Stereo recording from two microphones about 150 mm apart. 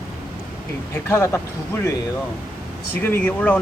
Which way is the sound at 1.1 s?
15° left (ahead or behind).